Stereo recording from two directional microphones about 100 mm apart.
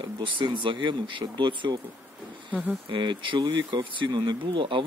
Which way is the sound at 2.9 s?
55° right (ahead or behind).